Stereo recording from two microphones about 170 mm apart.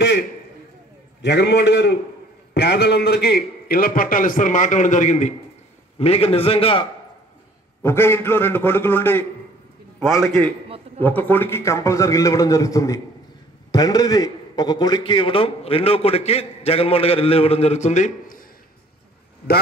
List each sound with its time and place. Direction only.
1.2 s a man's voice: 80° left; by 6.9 s 30° left (ahead or behind)
7.8 s a man's voice: 15° left (ahead or behind)
11.0 s a man's voice: 10° left (ahead or behind); by 18.5 s 55° left (ahead or behind)